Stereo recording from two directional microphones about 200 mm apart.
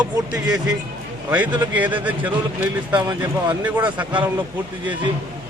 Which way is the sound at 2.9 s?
20° right (ahead or behind).